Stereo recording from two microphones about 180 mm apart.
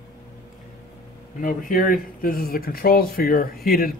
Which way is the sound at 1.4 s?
50° left (ahead or behind).